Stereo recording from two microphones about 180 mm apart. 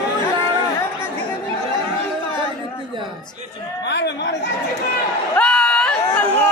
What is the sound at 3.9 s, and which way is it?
Chatter, 75° left (ahead or behind).